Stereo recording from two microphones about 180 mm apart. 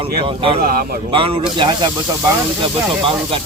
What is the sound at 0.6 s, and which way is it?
Speech, 55° right (ahead or behind).